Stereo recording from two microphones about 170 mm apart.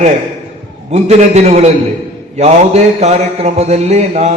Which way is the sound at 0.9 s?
40° right (ahead or behind).